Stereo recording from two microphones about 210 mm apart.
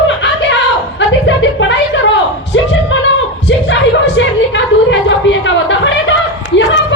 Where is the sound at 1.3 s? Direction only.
60° left (ahead or behind).